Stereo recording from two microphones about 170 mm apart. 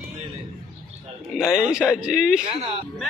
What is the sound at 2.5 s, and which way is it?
Speech, 40° right (ahead or behind).